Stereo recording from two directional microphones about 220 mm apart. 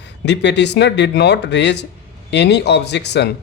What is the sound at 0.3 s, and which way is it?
Speech, 50° left (ahead or behind).